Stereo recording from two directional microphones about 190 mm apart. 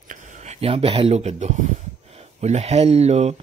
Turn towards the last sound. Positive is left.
turn(degrees=-35)  # may be behind; listen again after turning